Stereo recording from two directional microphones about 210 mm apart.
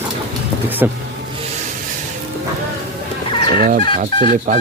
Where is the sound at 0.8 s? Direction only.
10° right (ahead or behind).